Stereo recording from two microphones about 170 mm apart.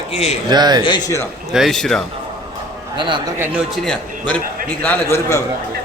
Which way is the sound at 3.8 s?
5° left (ahead or behind).